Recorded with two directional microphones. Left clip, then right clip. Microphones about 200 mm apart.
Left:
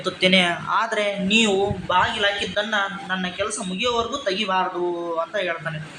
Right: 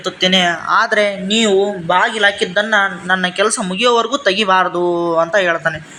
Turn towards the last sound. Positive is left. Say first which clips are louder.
# right 11 dB
turn(degrees=-40)  # may be behind; listen again after turning